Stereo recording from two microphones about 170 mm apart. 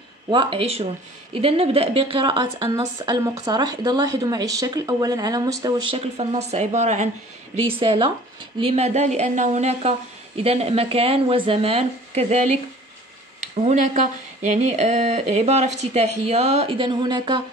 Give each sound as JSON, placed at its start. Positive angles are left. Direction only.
{"t": 0.3, "sound": "a woman's voice", "side_deg": -30}
{"t": 7.8, "sound": "speech", "side_deg": -30}
{"t": 13.4, "sound": "speech", "side_deg": -45}